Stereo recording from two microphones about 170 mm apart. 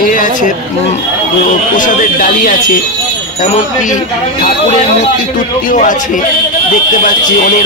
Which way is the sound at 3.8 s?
50° left (ahead or behind).